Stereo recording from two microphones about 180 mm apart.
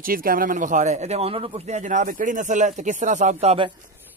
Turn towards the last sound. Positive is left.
turn(degrees=-35)  # may be behind; listen again after turning